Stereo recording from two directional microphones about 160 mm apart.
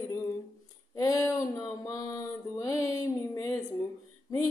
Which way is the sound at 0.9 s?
20° left (ahead or behind).